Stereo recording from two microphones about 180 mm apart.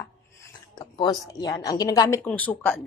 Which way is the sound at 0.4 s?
25° left (ahead or behind).